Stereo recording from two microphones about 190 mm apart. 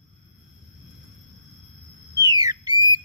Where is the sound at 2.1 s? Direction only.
20° right (ahead or behind).